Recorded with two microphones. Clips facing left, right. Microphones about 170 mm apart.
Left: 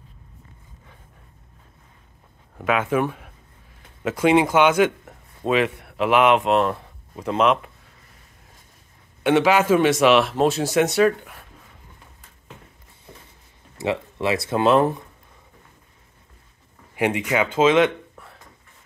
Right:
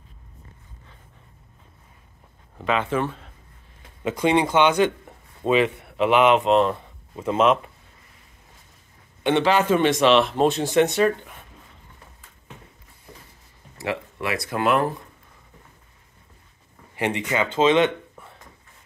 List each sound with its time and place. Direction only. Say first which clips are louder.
2.6 s a man's voice: left 2 dB; 5° left (ahead or behind)
9.2 s a man's voice: left 2 dB; 5° left (ahead or behind)
13.7 s speech: left 4 dB; 25° left (ahead or behind)
16.9 s speech: left 3 dB; 15° left (ahead or behind)